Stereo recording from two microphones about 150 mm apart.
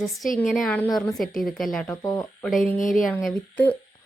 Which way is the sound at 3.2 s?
10° left (ahead or behind).